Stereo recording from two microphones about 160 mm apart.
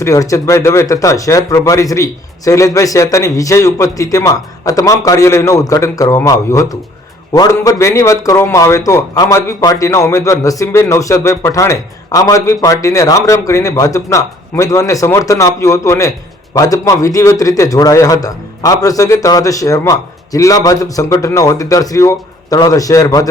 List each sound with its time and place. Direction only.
0.0 s a man's voice: 20° left (ahead or behind)